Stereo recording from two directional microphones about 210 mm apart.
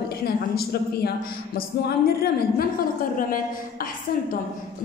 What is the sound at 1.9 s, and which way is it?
A woman's voice, 50° left (ahead or behind).